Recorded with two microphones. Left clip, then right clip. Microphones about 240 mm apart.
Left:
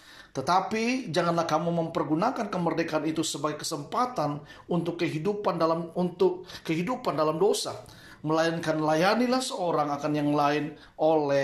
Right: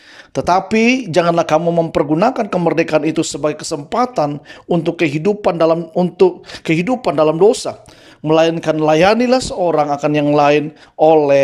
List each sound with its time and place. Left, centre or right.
0.3 s speech: right